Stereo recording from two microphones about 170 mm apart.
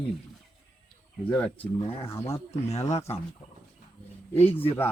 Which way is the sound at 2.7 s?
40° left (ahead or behind).